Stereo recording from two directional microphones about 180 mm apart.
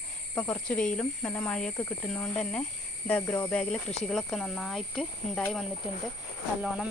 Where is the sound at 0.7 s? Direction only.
5° left (ahead or behind).